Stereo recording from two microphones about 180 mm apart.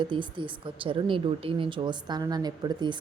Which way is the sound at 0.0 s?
25° right (ahead or behind).